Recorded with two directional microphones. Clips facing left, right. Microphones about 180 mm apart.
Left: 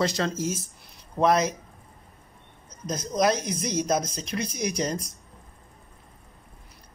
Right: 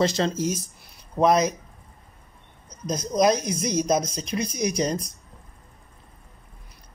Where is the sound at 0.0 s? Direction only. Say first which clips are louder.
Right 3 dB; 25° right (ahead or behind).